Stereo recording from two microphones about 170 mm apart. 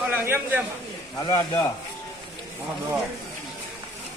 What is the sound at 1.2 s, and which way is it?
Speech, 25° left (ahead or behind).